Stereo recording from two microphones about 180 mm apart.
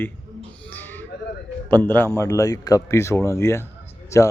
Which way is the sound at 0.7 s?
10° left (ahead or behind).